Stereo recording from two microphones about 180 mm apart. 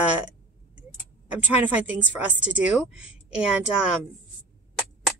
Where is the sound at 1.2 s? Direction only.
10° right (ahead or behind).